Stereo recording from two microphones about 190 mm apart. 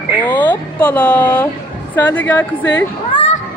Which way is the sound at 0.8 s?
10° left (ahead or behind).